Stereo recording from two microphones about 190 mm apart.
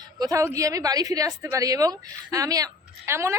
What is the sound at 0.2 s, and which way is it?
Speech, 20° right (ahead or behind).